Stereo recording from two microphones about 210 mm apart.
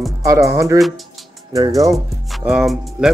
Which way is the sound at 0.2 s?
15° right (ahead or behind).